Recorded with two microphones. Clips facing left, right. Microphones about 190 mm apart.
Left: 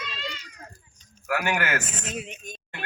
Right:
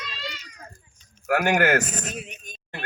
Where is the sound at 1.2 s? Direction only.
45° right (ahead or behind).